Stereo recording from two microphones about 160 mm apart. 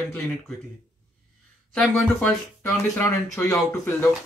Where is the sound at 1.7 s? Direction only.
5° left (ahead or behind).